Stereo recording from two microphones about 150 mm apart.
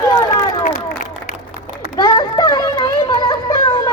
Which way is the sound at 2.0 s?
25° left (ahead or behind).